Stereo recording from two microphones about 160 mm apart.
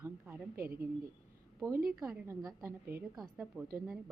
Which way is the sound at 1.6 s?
10° right (ahead or behind).